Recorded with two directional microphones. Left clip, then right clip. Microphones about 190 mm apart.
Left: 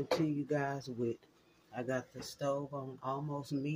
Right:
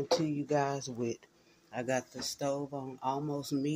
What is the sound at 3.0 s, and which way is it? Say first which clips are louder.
Speech: right 6 dB; 20° right (ahead or behind).